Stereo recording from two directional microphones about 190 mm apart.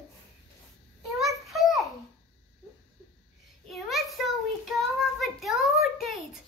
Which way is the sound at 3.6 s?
Centre (ahead or behind).